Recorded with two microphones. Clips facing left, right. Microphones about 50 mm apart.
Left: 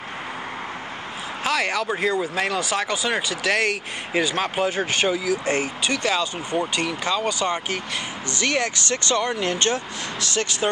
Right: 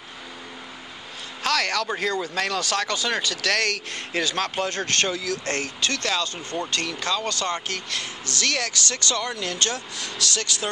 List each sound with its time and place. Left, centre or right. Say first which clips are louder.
1.4 s speech: left 1 dB; centre